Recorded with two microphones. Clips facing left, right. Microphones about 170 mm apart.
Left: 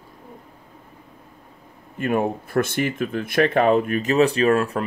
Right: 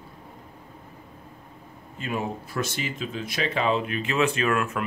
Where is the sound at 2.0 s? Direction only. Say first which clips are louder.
Left 8 dB; 55° left (ahead or behind).